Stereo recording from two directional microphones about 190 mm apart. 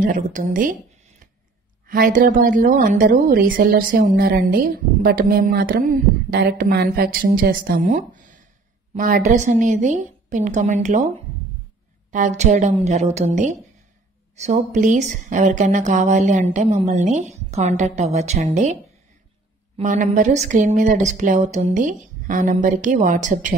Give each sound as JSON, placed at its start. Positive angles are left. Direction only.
{"t": 0.0, "sound": "speech", "side_deg": -45}
{"t": 7.8, "sound": "a sound", "side_deg": -40}
{"t": 8.9, "sound": "speech", "side_deg": -45}
{"t": 12.1, "sound": "speech", "side_deg": -40}
{"t": 19.8, "sound": "speech", "side_deg": -40}